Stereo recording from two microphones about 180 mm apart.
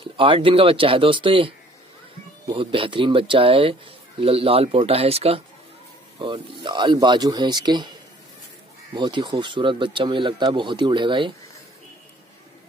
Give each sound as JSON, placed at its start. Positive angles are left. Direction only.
{"t": 0.0, "sound": "speech", "side_deg": -30}
{"t": 8.9, "sound": "speech", "side_deg": -25}